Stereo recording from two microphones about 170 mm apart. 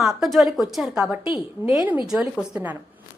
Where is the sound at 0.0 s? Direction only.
Centre (ahead or behind).